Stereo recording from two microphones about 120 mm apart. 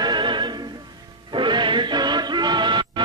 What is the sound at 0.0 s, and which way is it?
Music, 40° right (ahead or behind).